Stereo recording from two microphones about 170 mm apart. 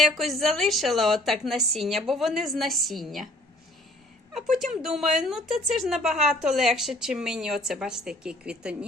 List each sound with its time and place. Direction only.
0.0 s speech: centre (ahead or behind)
4.4 s speech: centre (ahead or behind)